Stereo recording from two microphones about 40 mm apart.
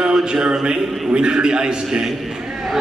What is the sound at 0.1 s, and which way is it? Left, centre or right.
A man's voice, centre.